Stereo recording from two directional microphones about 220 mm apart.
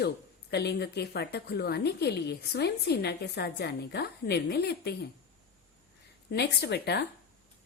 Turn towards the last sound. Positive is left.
turn(degrees=50)  # may be behind; listen again after turning